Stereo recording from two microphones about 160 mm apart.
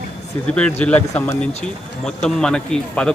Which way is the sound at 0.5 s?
10° left (ahead or behind).